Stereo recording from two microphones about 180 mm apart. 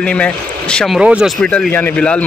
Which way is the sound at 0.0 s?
5° left (ahead or behind).